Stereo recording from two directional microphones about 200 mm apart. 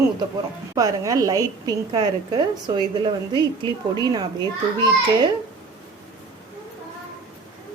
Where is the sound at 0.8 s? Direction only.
20° right (ahead or behind).